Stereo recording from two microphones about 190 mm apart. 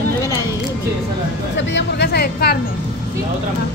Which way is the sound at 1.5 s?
65° left (ahead or behind).